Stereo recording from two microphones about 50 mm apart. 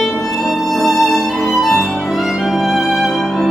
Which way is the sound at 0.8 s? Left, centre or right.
Centre.